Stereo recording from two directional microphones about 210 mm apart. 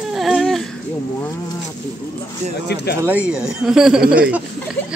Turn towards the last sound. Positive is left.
turn(degrees=-5)  # may be behind; listen again after turning